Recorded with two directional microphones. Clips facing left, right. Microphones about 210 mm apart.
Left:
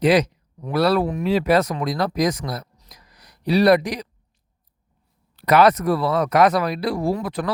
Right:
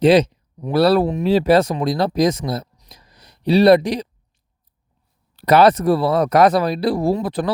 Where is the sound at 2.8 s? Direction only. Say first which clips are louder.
Right 2 dB; 25° right (ahead or behind).